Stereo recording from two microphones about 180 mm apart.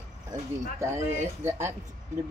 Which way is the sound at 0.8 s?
15° right (ahead or behind).